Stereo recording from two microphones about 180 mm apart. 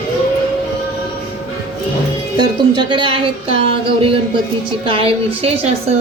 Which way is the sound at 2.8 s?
25° right (ahead or behind).